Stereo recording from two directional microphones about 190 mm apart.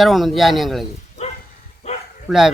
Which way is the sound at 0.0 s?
Centre (ahead or behind).